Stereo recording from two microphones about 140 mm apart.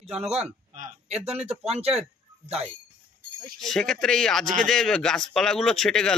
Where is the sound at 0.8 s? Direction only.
55° right (ahead or behind).